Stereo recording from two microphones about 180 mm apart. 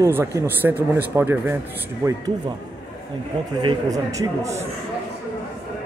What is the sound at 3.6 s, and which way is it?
Speech, 25° right (ahead or behind).